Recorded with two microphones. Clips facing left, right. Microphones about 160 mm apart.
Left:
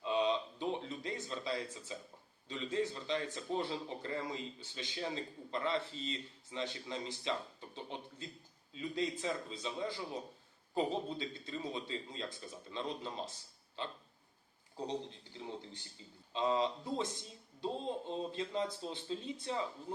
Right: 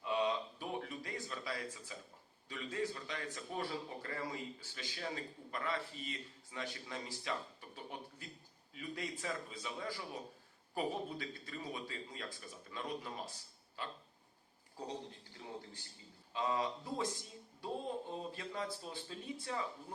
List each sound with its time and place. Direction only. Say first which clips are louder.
0.0 s a sound: left 3 dB; 20° left (ahead or behind)
2.5 s speech: left 4 dB; 25° left (ahead or behind)
16.3 s speech: left 4 dB; 25° left (ahead or behind)